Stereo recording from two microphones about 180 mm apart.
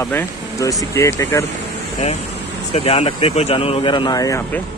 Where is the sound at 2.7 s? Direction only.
35° left (ahead or behind).